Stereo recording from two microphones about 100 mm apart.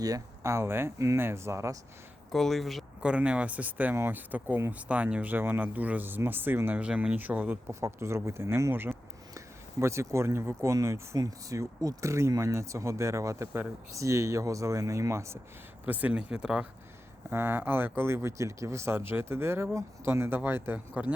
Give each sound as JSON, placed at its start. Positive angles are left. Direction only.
{"t": 0.0, "sound": "speech", "side_deg": -35}
{"t": 2.3, "sound": "speech", "side_deg": 0}
{"t": 3.0, "sound": "speech", "side_deg": -10}
{"t": 7.7, "sound": "speech", "side_deg": -30}
{"t": 15.9, "sound": "speech", "side_deg": -15}
{"t": 17.2, "sound": "speech", "side_deg": -20}